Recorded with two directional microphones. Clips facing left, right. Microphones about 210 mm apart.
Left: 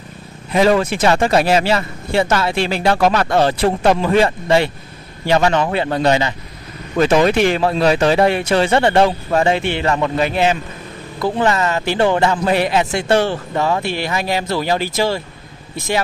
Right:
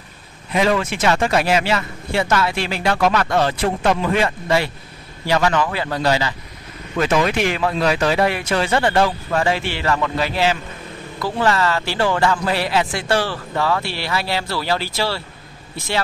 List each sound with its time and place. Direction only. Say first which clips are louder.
0.5 s speech: left 4 dB; 35° left (ahead or behind); by 15.2 s 15° left (ahead or behind)